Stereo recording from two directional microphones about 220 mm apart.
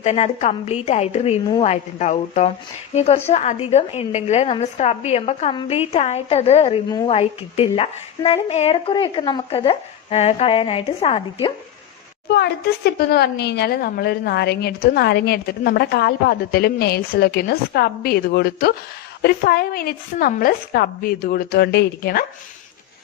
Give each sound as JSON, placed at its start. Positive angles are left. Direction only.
{"t": 0.0, "sound": "a woman's voice", "side_deg": 30}
{"t": 12.3, "sound": "speech", "side_deg": 50}